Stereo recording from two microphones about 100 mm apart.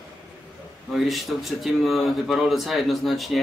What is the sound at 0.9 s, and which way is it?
Speech, centre (ahead or behind).